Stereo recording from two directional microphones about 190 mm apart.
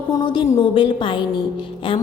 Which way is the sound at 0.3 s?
25° left (ahead or behind).